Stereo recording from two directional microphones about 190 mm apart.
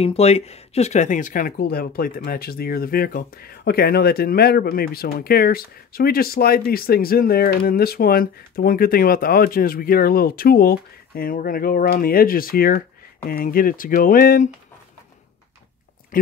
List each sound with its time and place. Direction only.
0.0 s speech: 30° left (ahead or behind)